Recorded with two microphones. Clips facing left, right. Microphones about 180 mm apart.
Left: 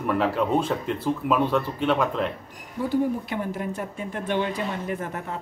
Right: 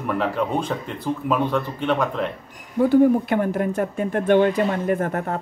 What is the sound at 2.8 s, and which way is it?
Speech, 55° right (ahead or behind).